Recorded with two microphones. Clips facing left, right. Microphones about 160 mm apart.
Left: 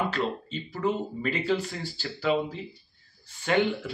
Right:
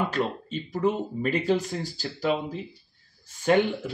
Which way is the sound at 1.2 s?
45° right (ahead or behind).